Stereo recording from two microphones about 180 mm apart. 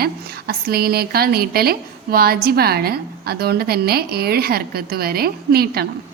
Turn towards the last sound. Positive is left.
turn(degrees=-60)  # may be behind; listen again after turning